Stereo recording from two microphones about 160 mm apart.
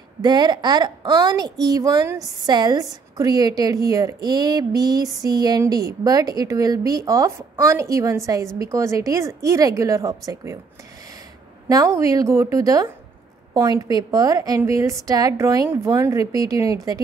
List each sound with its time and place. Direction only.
0.2 s a woman's voice: 25° right (ahead or behind)
11.7 s a woman's voice: 20° right (ahead or behind)